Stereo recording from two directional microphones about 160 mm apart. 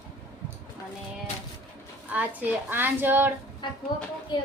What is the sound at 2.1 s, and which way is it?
A woman's voice, 10° right (ahead or behind).